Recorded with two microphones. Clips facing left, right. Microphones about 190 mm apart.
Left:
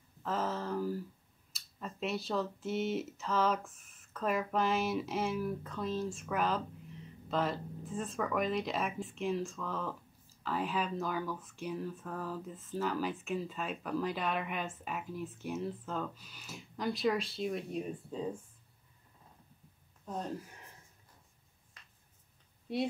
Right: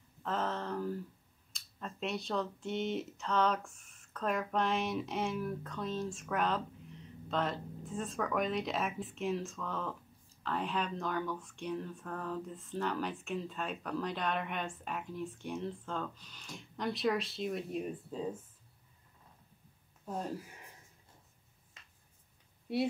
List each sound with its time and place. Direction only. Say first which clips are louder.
0.2 s speech: left 1 dB; 5° left (ahead or behind)
20.1 s speech: even; 5° right (ahead or behind)
21.8 s a sound: even; 25° right (ahead or behind)